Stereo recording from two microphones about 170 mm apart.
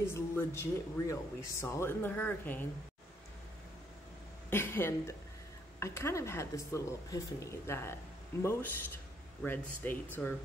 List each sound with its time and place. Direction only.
0.1 s speech: 15° left (ahead or behind)
4.5 s speech: 15° left (ahead or behind)